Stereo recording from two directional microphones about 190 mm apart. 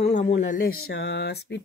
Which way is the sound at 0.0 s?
35° left (ahead or behind).